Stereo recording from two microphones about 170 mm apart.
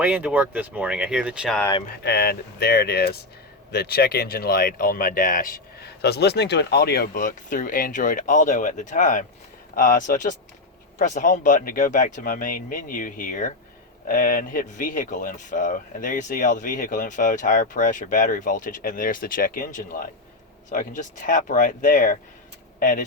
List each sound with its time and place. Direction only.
0.0 s speech: 10° right (ahead or behind)
2.0 s speech: 70° left (ahead or behind); by 23.0 s 55° left (ahead or behind)